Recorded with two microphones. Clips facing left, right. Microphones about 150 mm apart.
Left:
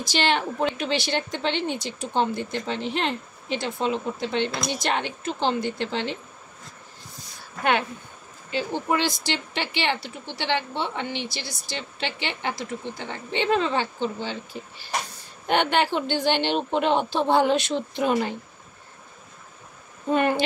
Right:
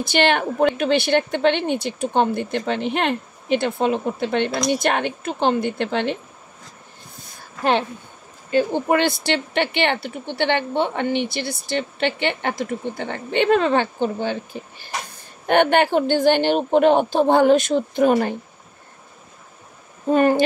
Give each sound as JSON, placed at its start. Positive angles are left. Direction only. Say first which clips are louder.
{"t": 0.0, "sound": "speech", "louder": "right 5 dB", "side_deg": -55}
{"t": 8.5, "sound": "speech", "louder": "right 7 dB", "side_deg": -50}
{"t": 20.1, "sound": "speech", "louder": "right 6 dB", "side_deg": -40}